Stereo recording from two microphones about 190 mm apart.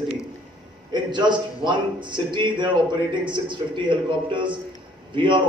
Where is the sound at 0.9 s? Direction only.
25° right (ahead or behind).